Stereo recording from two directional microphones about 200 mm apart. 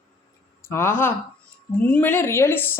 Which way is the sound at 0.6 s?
15° left (ahead or behind).